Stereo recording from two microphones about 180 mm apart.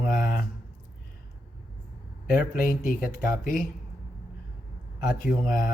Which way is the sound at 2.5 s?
50° left (ahead or behind).